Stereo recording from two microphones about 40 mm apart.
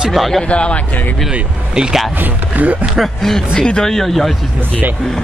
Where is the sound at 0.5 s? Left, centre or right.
Left.